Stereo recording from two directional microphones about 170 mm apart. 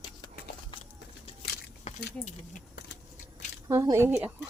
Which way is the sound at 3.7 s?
15° right (ahead or behind).